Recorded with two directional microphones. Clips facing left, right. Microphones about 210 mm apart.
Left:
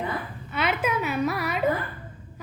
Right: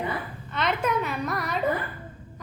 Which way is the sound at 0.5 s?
5° left (ahead or behind).